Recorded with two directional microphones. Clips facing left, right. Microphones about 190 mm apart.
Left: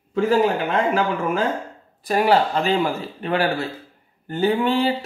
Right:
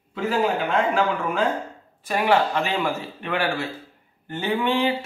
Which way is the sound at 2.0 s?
35° left (ahead or behind).